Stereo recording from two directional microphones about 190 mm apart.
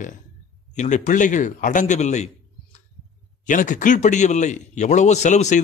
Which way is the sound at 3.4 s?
40° left (ahead or behind).